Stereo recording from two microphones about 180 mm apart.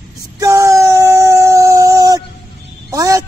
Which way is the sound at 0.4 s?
15° right (ahead or behind).